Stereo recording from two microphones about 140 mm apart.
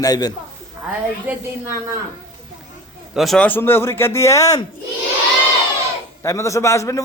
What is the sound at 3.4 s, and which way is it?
Speech, 15° left (ahead or behind).